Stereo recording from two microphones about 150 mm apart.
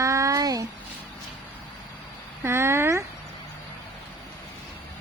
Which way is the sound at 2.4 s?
15° right (ahead or behind).